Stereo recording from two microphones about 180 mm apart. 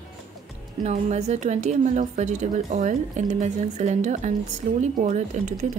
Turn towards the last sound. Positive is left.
turn(degrees=-40)  # may be behind; listen again after turning